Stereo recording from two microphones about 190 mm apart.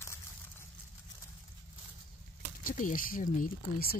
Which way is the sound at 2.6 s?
45° left (ahead or behind).